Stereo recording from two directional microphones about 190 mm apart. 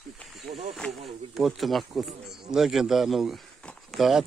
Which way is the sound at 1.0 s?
Centre (ahead or behind).